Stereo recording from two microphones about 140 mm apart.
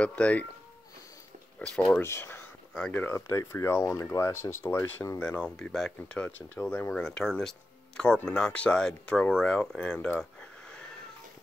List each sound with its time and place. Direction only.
0.0 s speech: 10° left (ahead or behind)
1.6 s speech: 5° left (ahead or behind)
2.0 s speech: 20° left (ahead or behind)